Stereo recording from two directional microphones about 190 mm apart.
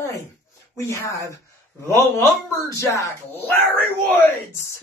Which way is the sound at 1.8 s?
15° left (ahead or behind).